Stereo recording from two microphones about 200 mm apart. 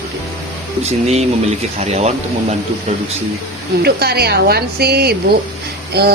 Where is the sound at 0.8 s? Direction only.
30° right (ahead or behind).